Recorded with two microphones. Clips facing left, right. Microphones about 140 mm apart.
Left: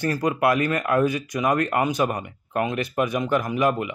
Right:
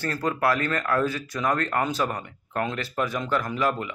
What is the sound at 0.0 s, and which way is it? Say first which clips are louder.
A man's voice: left 4 dB; 15° left (ahead or behind).